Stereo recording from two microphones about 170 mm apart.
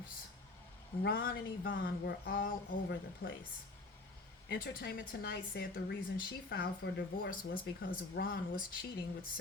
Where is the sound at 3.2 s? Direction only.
75° left (ahead or behind).